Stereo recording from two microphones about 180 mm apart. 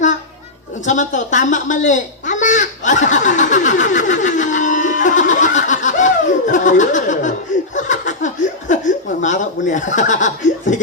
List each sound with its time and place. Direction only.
0.9 s a sound: 45° left (ahead or behind)
7.8 s laughter: 45° left (ahead or behind)
8.7 s speech: 45° left (ahead or behind)